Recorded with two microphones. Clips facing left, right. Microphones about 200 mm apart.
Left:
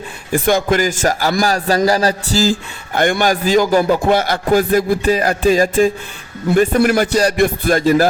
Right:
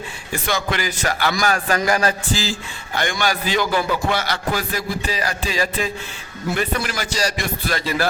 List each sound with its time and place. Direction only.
0.3 s a man's voice: 50° left (ahead or behind)